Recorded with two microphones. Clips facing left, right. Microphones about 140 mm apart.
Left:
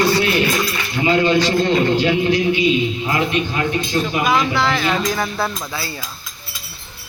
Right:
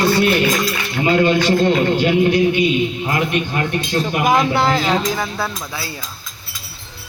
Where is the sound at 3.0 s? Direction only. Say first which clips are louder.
Even; 50° right (ahead or behind).